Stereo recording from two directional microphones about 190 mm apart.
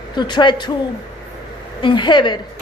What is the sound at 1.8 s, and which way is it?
Speech, 25° left (ahead or behind).